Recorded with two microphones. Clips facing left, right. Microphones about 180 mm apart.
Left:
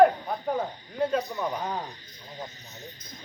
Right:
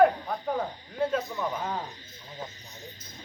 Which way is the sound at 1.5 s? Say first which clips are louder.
Left 1 dB; 15° left (ahead or behind).